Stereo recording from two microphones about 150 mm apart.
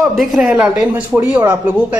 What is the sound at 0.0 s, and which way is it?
A woman's voice, centre (ahead or behind).